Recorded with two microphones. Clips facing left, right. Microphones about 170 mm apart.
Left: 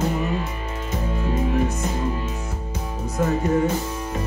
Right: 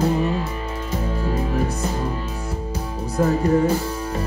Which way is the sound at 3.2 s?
35° right (ahead or behind).